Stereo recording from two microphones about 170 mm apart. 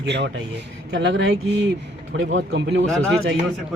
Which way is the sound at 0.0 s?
85° right.